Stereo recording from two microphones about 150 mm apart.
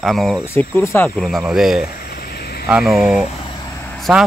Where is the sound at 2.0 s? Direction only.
90° left.